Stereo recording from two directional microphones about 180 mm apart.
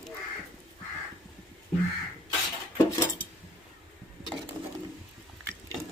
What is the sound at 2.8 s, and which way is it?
Dishes, 15° left (ahead or behind).